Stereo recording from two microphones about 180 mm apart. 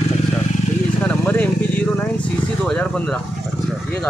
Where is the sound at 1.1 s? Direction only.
10° left (ahead or behind).